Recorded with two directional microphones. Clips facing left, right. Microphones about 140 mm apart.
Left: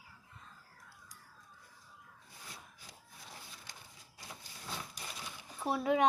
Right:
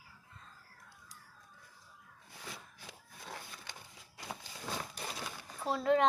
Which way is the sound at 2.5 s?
70° right (ahead or behind).